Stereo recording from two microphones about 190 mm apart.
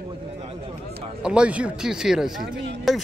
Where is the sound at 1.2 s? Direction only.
5° right (ahead or behind).